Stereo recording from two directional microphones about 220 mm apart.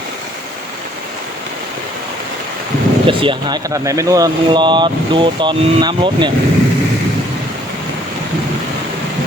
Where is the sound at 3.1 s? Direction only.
25° right (ahead or behind).